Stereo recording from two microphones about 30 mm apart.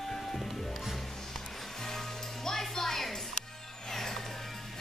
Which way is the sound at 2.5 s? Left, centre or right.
Centre.